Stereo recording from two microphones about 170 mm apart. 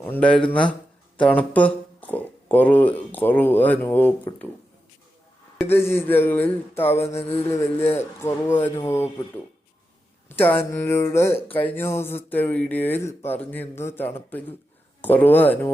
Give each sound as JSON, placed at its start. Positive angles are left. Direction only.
{"t": 0.0, "sound": "speech", "side_deg": 10}
{"t": 5.6, "sound": "speech", "side_deg": 15}
{"t": 7.0, "sound": "speech", "side_deg": 35}
{"t": 7.9, "sound": "speech", "side_deg": 15}
{"t": 10.2, "sound": "speech", "side_deg": 10}